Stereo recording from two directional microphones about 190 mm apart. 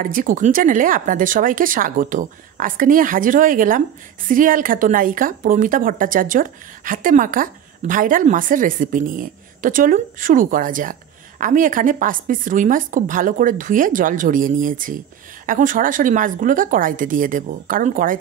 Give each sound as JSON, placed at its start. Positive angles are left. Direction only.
{"t": 0.0, "sound": "a woman's voice", "side_deg": -45}